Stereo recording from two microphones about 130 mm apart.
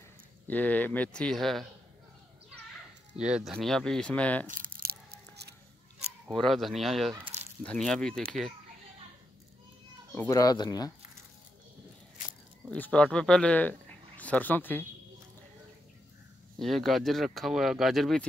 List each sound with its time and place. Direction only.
0.5 s speech: 10° left (ahead or behind)
3.2 s speech: 5° right (ahead or behind)
3.5 s speech: 5° left (ahead or behind)
4.5 s a sound: 90° right
6.2 s speech: centre (ahead or behind)
10.3 s speech: 30° left (ahead or behind)
12.7 s speech: 10° left (ahead or behind)
16.5 s speech: centre (ahead or behind)